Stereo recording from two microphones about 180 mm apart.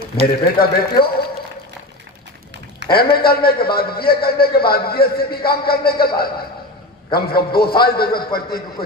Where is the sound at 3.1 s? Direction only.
55° left (ahead or behind).